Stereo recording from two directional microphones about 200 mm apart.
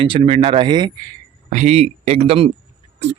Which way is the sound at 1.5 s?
35° right (ahead or behind).